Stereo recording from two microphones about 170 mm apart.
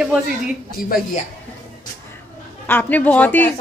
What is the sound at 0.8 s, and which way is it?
Speech, 60° left (ahead or behind).